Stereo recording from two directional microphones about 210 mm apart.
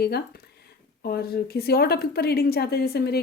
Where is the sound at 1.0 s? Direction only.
45° left (ahead or behind).